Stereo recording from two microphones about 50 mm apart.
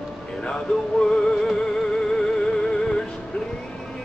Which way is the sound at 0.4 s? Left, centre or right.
Centre.